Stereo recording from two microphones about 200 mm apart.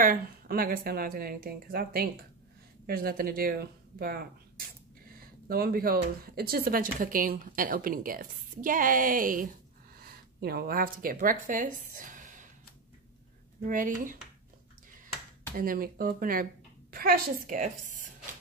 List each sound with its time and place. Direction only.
0.0 s speech: 45° right (ahead or behind)
13.7 s speech: 40° right (ahead or behind)
15.5 s speech: 45° right (ahead or behind)